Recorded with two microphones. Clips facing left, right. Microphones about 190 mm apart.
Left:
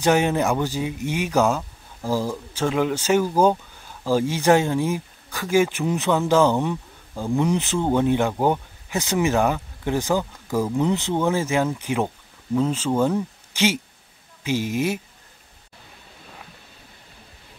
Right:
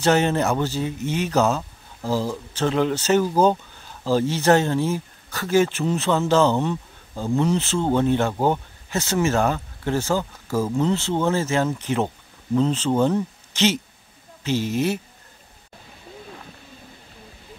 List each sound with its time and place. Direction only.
0.0 s speech: 10° left (ahead or behind)